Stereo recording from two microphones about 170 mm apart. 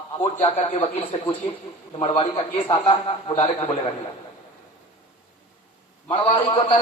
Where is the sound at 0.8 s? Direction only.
30° left (ahead or behind).